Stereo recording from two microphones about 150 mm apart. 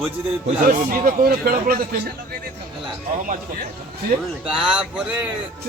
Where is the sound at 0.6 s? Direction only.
60° right (ahead or behind); by 2.1 s 80° right.